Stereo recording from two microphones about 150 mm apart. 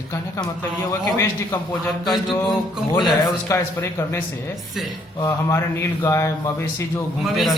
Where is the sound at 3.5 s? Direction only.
20° left (ahead or behind).